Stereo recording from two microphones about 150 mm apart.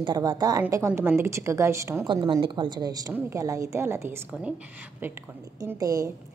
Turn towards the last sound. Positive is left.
turn(degrees=-25)  # may be behind; listen again after turning